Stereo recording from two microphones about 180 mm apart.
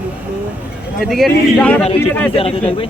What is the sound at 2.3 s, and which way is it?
Speech, 30° left (ahead or behind).